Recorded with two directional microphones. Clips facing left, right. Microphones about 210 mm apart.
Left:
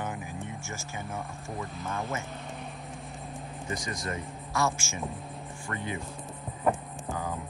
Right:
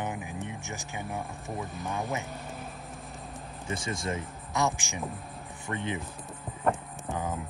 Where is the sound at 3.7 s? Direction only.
25° right (ahead or behind).